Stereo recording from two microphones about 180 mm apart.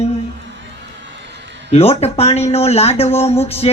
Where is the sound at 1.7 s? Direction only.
35° left (ahead or behind).